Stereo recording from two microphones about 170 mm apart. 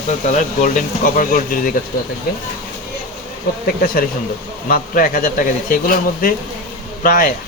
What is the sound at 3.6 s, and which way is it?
Speech, 60° left (ahead or behind).